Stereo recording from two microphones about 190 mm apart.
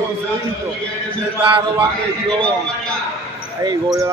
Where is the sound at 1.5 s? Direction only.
25° right (ahead or behind).